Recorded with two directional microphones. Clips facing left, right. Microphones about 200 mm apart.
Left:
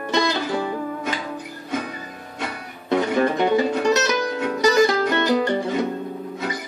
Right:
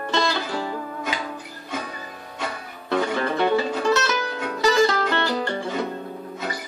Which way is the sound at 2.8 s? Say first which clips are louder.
Left 4 dB; 20° left (ahead or behind).